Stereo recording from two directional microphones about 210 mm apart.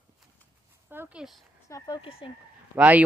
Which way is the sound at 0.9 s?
10° right (ahead or behind).